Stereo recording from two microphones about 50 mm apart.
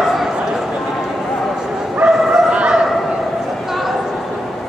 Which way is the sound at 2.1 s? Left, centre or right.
Centre.